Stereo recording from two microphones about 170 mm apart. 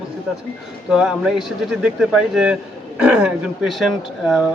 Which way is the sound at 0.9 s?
5° right (ahead or behind).